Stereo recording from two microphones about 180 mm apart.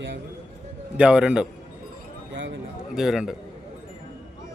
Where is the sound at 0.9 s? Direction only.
5° right (ahead or behind).